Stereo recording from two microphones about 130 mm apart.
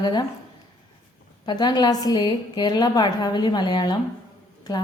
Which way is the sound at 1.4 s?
35° left (ahead or behind).